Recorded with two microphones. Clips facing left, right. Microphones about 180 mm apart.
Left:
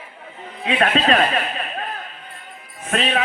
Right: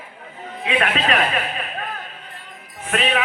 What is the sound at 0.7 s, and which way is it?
Speech, 35° left (ahead or behind).